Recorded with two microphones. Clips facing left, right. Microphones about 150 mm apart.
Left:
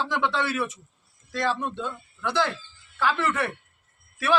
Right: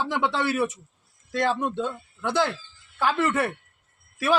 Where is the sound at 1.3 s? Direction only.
50° right (ahead or behind).